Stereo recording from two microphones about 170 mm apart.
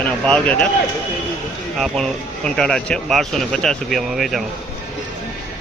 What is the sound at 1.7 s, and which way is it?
Speech, 5° left (ahead or behind).